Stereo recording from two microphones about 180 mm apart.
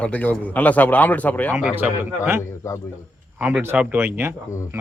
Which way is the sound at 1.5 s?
10° right (ahead or behind).